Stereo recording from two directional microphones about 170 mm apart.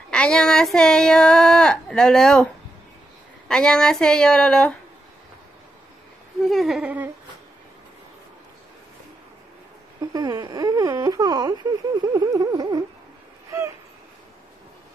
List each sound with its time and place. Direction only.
0.1 s speech: 5° left (ahead or behind)
6.4 s speech: centre (ahead or behind)
10.1 s a sound: 25° right (ahead or behind)